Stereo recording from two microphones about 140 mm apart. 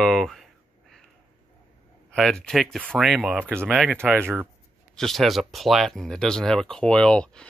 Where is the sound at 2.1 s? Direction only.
5° left (ahead or behind).